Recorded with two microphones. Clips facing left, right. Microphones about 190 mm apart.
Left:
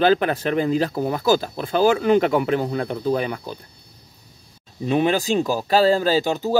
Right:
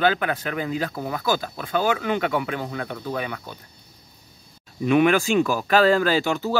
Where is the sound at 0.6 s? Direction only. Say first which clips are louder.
Left 6 dB; 35° left (ahead or behind).